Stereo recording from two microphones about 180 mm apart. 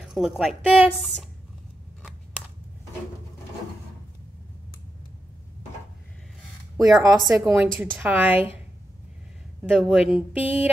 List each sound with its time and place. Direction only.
0.0 s speech: 5° right (ahead or behind)
6.8 s speech: 20° right (ahead or behind)
9.6 s speech: 5° right (ahead or behind)